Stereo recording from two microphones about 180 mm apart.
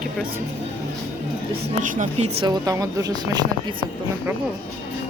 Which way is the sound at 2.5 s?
20° right (ahead or behind).